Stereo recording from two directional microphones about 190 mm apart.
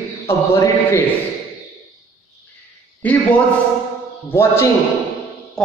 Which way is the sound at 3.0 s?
10° left (ahead or behind).